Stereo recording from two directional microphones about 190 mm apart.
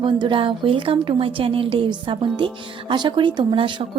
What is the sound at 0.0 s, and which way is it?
A woman's voice, 25° right (ahead or behind).